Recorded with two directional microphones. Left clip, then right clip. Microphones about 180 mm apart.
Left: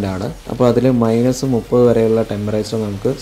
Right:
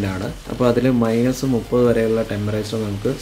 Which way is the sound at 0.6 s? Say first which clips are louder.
Left 4 dB; 25° left (ahead or behind).